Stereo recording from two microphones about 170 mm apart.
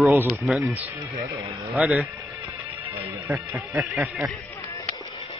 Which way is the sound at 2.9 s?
15° right (ahead or behind).